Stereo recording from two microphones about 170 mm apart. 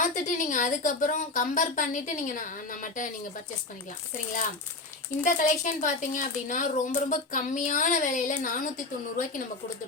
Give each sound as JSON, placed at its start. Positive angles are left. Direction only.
{"t": 0.0, "sound": "speech", "side_deg": 50}
{"t": 5.2, "sound": "speech", "side_deg": 50}